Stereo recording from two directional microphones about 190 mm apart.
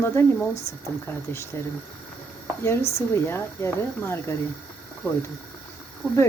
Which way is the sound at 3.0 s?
10° left (ahead or behind).